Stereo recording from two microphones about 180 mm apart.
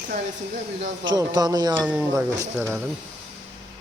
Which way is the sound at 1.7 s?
10° right (ahead or behind).